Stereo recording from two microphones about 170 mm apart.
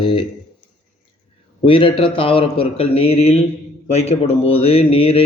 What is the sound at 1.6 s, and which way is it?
A man's voice, 30° left (ahead or behind).